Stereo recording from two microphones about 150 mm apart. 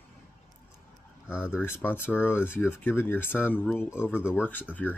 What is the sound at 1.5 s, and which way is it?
Speech, 15° left (ahead or behind).